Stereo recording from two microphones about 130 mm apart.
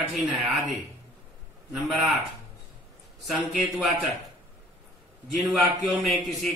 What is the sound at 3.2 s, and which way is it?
Speech, centre (ahead or behind).